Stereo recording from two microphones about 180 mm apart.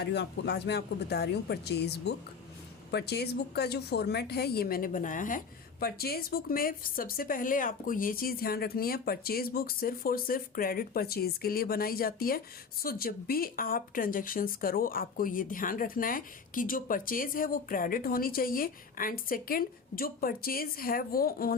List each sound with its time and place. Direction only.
0.0 s a woman's voice: 70° left (ahead or behind); by 5.4 s 50° left (ahead or behind)
5.8 s a woman's voice: 60° left (ahead or behind)